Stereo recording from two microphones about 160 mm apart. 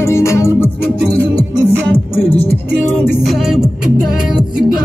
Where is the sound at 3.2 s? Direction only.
Centre (ahead or behind).